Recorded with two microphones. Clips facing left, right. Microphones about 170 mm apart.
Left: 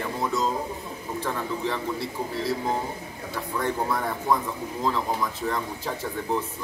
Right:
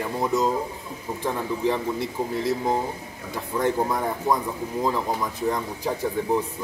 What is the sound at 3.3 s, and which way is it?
A man's voice, 15° right (ahead or behind).